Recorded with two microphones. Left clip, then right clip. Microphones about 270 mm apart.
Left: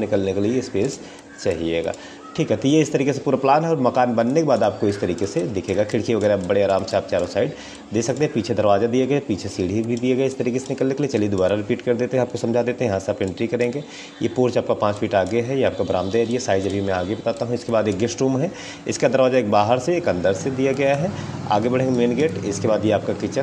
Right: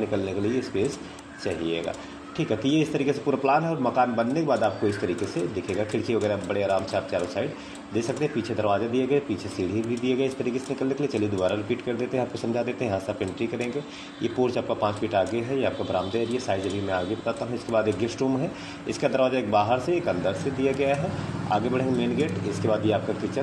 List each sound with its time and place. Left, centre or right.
0.1 s speech: left
2.3 s a man's voice: left